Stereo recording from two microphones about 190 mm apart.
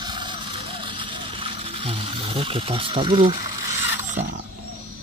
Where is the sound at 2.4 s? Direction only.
30° right (ahead or behind).